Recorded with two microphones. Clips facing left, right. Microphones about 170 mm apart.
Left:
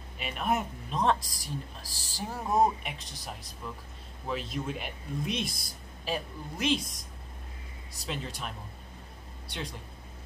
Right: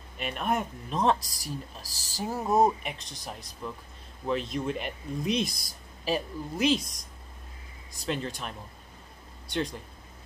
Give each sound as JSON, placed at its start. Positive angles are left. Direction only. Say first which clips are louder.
{"t": 0.2, "sound": "speech", "louder": "right 1 dB", "side_deg": 0}
{"t": 1.2, "sound": "speech", "louder": "right 1 dB", "side_deg": -40}
{"t": 2.2, "sound": "speech", "louder": "right 3 dB", "side_deg": -10}
{"t": 2.8, "sound": "speech", "louder": "right 3 dB", "side_deg": 0}
{"t": 5.4, "sound": "speech", "louder": "right 4 dB", "side_deg": -40}
{"t": 6.0, "sound": "speech", "louder": "right 5 dB", "side_deg": -5}
{"t": 8.1, "sound": "speech", "louder": "right 5 dB", "side_deg": 0}